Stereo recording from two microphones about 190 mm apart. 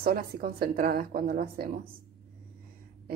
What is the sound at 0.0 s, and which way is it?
A woman's voice, 50° right (ahead or behind).